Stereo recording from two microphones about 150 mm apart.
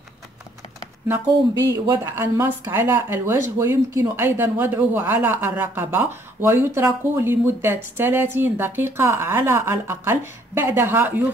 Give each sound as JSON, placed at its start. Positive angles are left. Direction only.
{"t": 1.5, "sound": "speech", "side_deg": -20}